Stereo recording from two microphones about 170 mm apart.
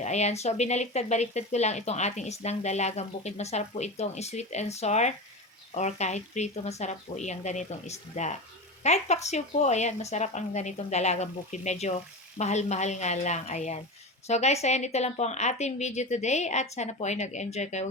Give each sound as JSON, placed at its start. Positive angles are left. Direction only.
{"t": 0.0, "sound": "speech", "side_deg": 40}